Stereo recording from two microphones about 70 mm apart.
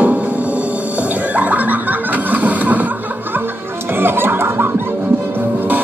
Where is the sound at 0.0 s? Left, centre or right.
Right.